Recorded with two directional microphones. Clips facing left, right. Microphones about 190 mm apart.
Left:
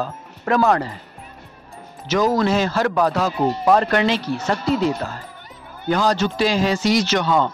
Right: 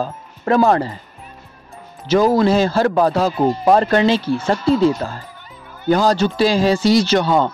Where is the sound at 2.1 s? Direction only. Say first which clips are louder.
Right 4 dB; 30° right (ahead or behind).